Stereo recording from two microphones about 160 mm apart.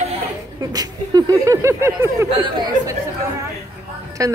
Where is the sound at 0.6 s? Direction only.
25° right (ahead or behind).